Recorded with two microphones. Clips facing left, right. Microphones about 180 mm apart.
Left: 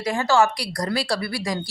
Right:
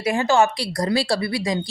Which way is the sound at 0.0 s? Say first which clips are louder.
Right 1 dB; 20° right (ahead or behind).